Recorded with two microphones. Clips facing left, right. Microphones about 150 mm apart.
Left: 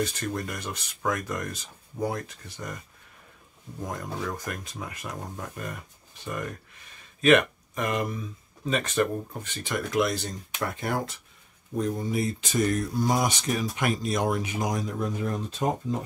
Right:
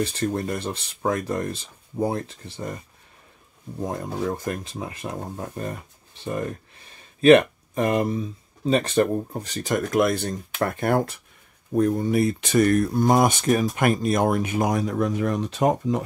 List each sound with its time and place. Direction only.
0.0 s speech: 30° right (ahead or behind)
3.8 s speech: 30° right (ahead or behind); by 16.0 s 75° right (ahead or behind)